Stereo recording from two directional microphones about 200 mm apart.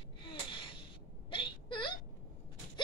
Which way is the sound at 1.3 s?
25° left (ahead or behind).